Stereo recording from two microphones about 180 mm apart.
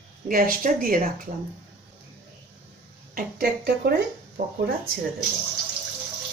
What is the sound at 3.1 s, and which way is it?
Speech, 55° right (ahead or behind).